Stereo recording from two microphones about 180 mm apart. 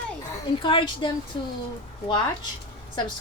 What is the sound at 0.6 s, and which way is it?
Speech, 25° left (ahead or behind).